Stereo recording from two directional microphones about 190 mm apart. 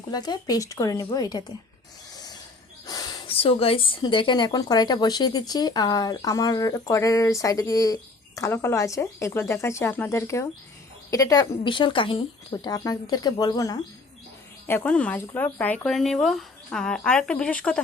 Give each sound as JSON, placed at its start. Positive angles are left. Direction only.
{"t": 0.1, "sound": "speech", "side_deg": 20}
{"t": 2.1, "sound": "a sound", "side_deg": 20}
{"t": 2.8, "sound": "speech", "side_deg": 20}
{"t": 14.7, "sound": "a woman's voice", "side_deg": 5}